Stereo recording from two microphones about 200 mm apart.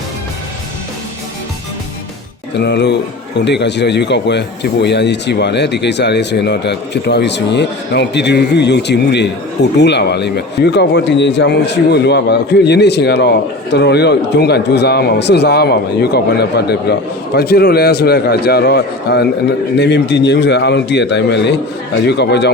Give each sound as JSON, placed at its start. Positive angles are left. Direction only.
{"t": 2.6, "sound": "a man's voice", "side_deg": 60}